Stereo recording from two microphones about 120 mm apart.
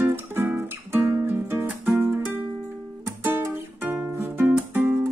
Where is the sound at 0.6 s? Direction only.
20° right (ahead or behind).